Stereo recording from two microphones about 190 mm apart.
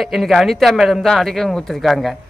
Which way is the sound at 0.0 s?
Centre (ahead or behind).